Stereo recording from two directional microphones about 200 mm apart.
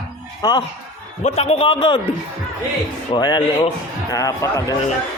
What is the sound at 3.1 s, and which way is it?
A man's voice, 20° left (ahead or behind).